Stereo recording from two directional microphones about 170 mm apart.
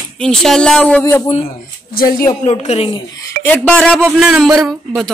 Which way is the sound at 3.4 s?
10° left (ahead or behind).